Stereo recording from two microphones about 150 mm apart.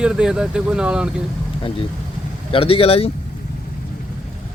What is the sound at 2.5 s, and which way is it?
Speech, 40° left (ahead or behind).